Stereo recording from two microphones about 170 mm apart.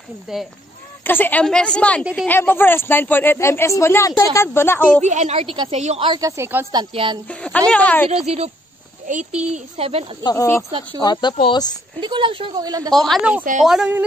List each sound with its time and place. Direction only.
0.3 s a woman's voice: centre (ahead or behind)
1.0 s a woman's voice: 10° left (ahead or behind)
5.0 s a woman's voice: 45° right (ahead or behind)
7.2 s a woman's voice: 5° left (ahead or behind)
9.0 s a child's voice: 45° right (ahead or behind)
10.2 s a woman's voice: 15° left (ahead or behind)
12.0 s a woman's voice: 30° right (ahead or behind)
12.9 s a woman's voice: centre (ahead or behind)
13.4 s speech: 50° right (ahead or behind)
13.7 s a woman's voice: 5° right (ahead or behind)